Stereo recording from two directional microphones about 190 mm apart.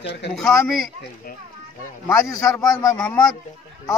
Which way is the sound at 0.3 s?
Centre (ahead or behind).